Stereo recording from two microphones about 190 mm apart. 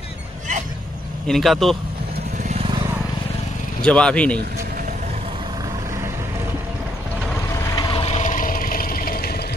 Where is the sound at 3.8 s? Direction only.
5° left (ahead or behind).